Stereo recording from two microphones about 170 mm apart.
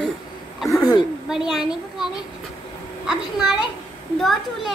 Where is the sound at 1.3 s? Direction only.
5° right (ahead or behind).